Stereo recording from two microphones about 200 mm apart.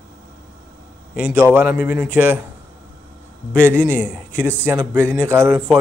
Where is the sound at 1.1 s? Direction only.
5° right (ahead or behind).